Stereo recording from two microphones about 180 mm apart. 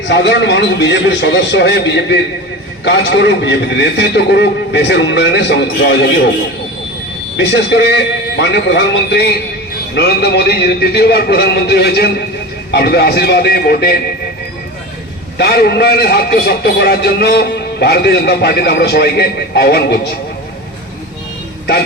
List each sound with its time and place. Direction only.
0.1 s a man's voice: 80° left
7.3 s a man's voice: 75° left (ahead or behind); by 14.0 s 60° left (ahead or behind)
15.4 s a man's voice: 65° left (ahead or behind)